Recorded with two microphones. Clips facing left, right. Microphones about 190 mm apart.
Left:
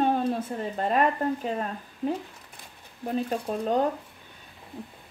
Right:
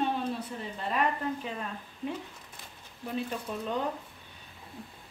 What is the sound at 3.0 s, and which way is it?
Speech, 40° left (ahead or behind).